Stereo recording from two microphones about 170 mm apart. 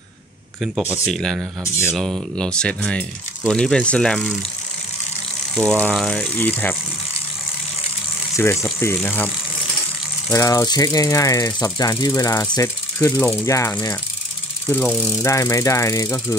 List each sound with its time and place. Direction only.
0.6 s speech: centre (ahead or behind)
5.5 s speech: 5° left (ahead or behind)
8.4 s speech: 15° left (ahead or behind)
10.3 s speech: 20° left (ahead or behind)